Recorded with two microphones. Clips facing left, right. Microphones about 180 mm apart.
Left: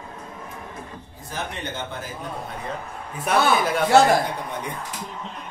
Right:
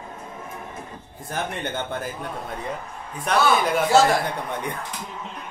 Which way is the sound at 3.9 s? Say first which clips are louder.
Left 2 dB; 60° left (ahead or behind).